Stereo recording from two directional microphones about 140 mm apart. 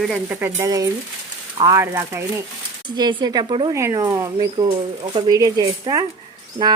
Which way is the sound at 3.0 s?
30° right (ahead or behind).